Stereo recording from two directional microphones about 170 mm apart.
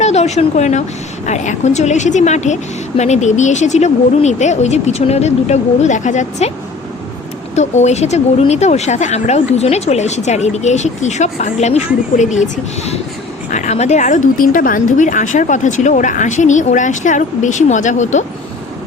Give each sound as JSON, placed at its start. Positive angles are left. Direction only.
{"t": 0.0, "sound": "a woman's voice", "side_deg": 40}
{"t": 7.5, "sound": "a woman's voice", "side_deg": 40}